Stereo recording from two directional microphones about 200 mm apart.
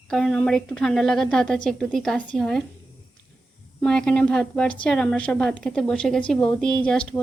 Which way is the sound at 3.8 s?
5° left (ahead or behind).